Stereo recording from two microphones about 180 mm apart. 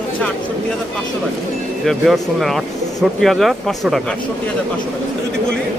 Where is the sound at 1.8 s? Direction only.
Centre (ahead or behind).